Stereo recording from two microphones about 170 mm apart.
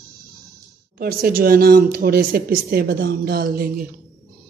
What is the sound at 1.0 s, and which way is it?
Speech, 60° right (ahead or behind).